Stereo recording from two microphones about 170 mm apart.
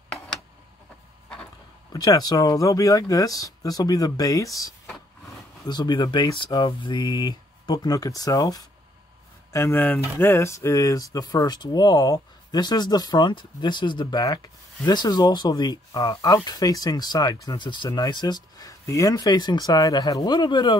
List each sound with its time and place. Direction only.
1.9 s speech: 20° left (ahead or behind)